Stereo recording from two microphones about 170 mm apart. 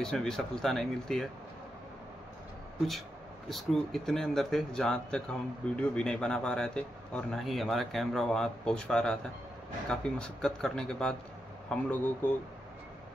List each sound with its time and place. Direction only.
0.0 s speech: 5° left (ahead or behind)
3.4 s speech: centre (ahead or behind)